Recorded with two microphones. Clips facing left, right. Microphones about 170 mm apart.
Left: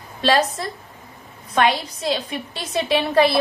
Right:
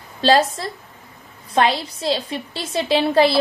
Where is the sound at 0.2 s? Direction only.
30° right (ahead or behind).